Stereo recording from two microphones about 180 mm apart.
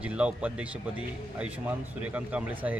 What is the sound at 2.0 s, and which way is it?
Speech, 5° right (ahead or behind).